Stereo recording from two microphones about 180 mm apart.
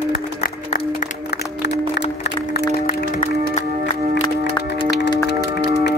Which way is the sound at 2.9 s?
50° left (ahead or behind).